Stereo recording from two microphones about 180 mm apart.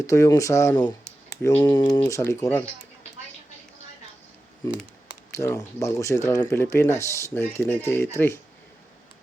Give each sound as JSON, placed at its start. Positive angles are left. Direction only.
{"t": 0.0, "sound": "speech", "side_deg": 15}
{"t": 5.3, "sound": "speech", "side_deg": 15}